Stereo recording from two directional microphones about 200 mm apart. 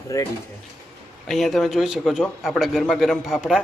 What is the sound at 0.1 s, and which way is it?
Speech, 15° left (ahead or behind).